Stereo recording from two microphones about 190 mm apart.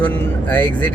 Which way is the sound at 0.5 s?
10° left (ahead or behind).